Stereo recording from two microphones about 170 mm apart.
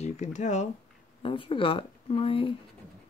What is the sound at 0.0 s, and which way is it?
Speech, 45° left (ahead or behind).